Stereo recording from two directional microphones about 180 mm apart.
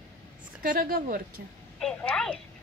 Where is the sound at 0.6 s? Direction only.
55° right (ahead or behind).